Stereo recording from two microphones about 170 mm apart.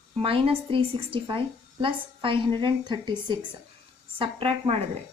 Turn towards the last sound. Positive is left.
turn(degrees=-30)  # may be behind; listen again after turning